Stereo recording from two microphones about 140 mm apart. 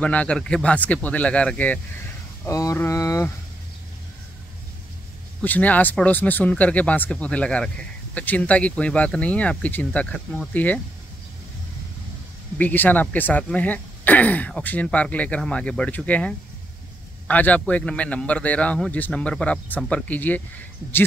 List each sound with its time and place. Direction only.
0.0 s speech: 10° left (ahead or behind)
2.4 s speech: 20° left (ahead or behind)
5.4 s speech: 10° left (ahead or behind)
12.5 s speech: 10° left (ahead or behind)